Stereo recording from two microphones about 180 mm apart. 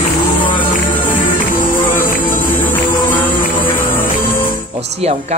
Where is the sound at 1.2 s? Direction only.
50° left (ahead or behind).